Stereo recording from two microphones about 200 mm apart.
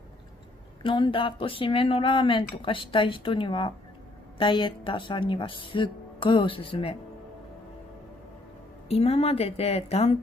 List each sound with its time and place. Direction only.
0.8 s speech: 25° left (ahead or behind)
8.8 s a woman's voice: 30° left (ahead or behind)